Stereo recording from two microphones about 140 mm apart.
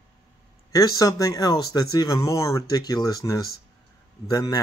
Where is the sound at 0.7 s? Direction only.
25° left (ahead or behind).